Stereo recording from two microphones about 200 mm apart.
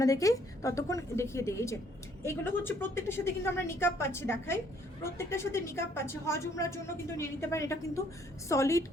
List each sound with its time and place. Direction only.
0.0 s a woman's voice: 15° left (ahead or behind)